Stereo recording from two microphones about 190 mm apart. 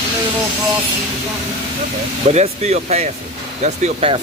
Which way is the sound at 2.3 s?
35° right (ahead or behind).